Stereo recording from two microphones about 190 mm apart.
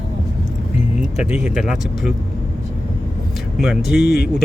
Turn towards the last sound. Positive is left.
turn(degrees=60)  # may be behind; listen again after turning